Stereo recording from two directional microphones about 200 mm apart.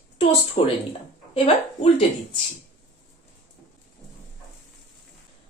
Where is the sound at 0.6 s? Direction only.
25° left (ahead or behind).